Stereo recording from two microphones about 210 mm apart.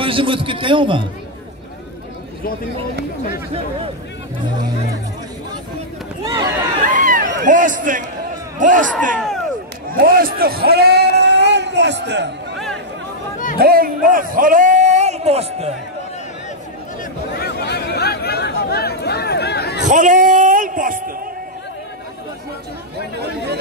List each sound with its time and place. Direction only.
0.0 s a man's voice: 25° right (ahead or behind)
6.2 s speech: 15° right (ahead or behind)
6.9 s a sound: 40° right (ahead or behind)
8.5 s speech: 40° right (ahead or behind)
9.1 s speech: centre (ahead or behind)
9.8 s speech: 45° right (ahead or behind)
13.6 s a man's voice: 45° right (ahead or behind); by 15.7 s 30° right (ahead or behind)
17.3 s a sound: 50° left (ahead or behind)
19.9 s a sound: 35° right (ahead or behind)
23.1 s chatter: 50° right (ahead or behind)